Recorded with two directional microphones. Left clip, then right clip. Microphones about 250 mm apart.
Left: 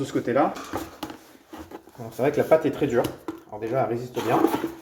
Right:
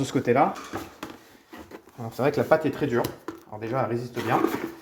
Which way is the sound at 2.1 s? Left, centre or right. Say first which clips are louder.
Left 2 dB; right.